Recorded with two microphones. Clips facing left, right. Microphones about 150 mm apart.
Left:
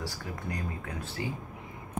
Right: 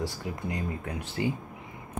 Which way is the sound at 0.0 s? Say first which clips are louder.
Right 4 dB; 20° right (ahead or behind).